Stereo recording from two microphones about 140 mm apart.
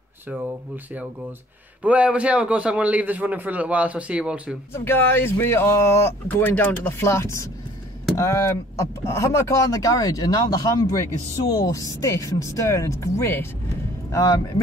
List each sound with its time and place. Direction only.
1.8 s a man's voice: 10° right (ahead or behind)
4.7 s speech: 15° left (ahead or behind)